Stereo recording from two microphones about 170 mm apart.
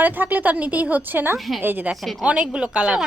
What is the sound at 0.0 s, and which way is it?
A woman's voice, 10° right (ahead or behind).